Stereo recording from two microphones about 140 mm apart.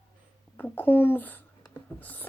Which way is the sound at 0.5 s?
15° left (ahead or behind).